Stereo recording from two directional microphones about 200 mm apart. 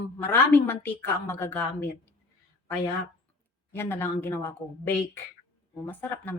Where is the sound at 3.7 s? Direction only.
10° left (ahead or behind).